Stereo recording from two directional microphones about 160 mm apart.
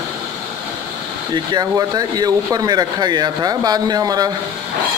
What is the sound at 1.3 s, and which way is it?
Speech, 25° right (ahead or behind).